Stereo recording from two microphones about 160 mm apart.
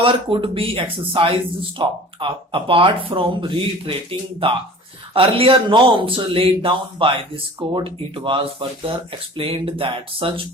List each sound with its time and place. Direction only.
0.0 s speech: 35° right (ahead or behind)
5.1 s speech: 35° right (ahead or behind)